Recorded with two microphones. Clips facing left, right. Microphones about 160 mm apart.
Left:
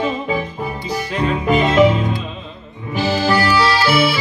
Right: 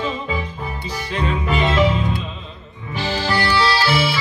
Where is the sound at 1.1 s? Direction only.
40° left (ahead or behind).